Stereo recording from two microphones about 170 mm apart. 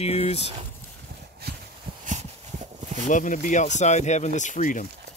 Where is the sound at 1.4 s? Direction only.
70° right (ahead or behind).